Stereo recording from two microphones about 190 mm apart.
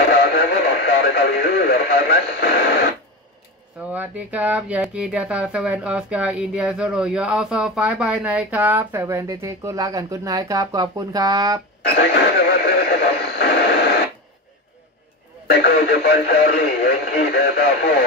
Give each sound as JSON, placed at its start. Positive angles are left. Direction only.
{"t": 0.2, "sound": "radio", "side_deg": 55}
{"t": 3.9, "sound": "speech", "side_deg": -5}
{"t": 11.8, "sound": "radio", "side_deg": 60}
{"t": 15.6, "sound": "speech", "side_deg": 60}